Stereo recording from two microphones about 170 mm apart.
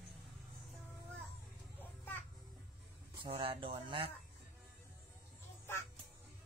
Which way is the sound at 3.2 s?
30° right (ahead or behind).